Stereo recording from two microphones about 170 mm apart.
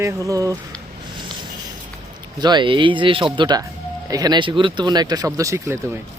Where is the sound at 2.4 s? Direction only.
25° right (ahead or behind).